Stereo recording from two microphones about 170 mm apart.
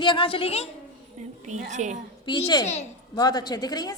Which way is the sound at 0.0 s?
30° left (ahead or behind).